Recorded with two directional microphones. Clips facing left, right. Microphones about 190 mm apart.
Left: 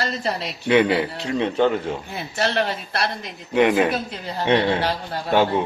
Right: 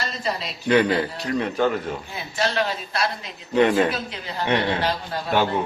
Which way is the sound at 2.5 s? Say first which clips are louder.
Left 1 dB; 60° left (ahead or behind).